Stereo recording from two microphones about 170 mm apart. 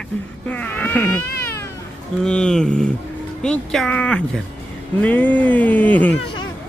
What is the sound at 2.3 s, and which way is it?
Speech, 5° left (ahead or behind).